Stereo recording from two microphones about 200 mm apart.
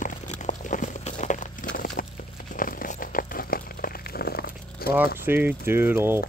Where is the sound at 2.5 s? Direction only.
45° left (ahead or behind).